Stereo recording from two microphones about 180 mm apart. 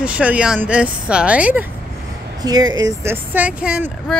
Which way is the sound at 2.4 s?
20° right (ahead or behind).